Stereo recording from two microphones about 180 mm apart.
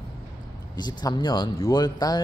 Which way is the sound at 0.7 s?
25° left (ahead or behind).